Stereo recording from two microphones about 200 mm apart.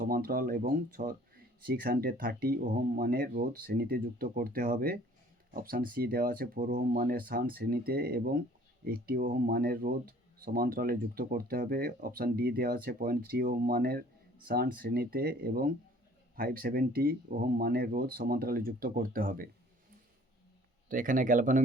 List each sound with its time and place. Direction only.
0.0 s speech: 45° right (ahead or behind)
20.9 s speech: 45° right (ahead or behind)